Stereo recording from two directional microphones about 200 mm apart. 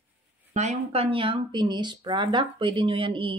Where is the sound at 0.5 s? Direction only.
35° right (ahead or behind).